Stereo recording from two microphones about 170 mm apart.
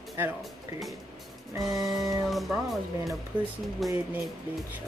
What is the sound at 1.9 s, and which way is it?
Speech, 20° right (ahead or behind).